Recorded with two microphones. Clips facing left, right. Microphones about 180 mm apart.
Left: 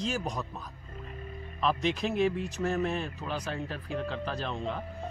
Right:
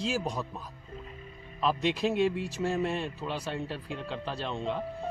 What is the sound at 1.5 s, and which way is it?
Speech, centre (ahead or behind).